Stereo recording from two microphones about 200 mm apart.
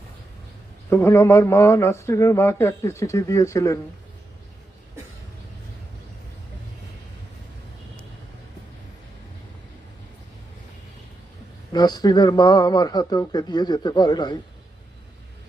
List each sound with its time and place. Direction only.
0.9 s speech: 15° left (ahead or behind)
11.7 s a man's voice: 20° left (ahead or behind)